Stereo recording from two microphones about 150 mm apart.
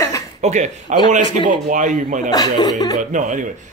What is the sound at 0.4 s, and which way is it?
Speech, 50° right (ahead or behind).